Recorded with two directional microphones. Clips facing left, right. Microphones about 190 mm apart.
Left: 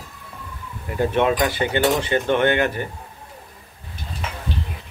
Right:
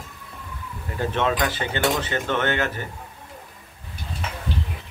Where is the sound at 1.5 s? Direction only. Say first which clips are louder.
Left 4 dB; 15° left (ahead or behind).